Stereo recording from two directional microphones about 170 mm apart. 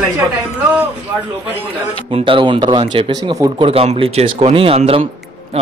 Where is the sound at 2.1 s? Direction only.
30° right (ahead or behind).